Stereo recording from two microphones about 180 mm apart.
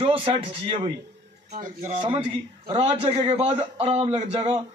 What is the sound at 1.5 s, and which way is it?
Speech, 45° right (ahead or behind).